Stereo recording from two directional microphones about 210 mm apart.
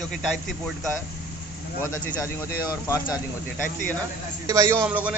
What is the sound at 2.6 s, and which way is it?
Speech, 15° left (ahead or behind).